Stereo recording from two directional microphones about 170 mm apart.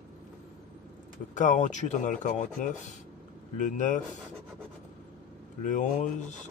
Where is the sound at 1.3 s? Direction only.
45° left (ahead or behind).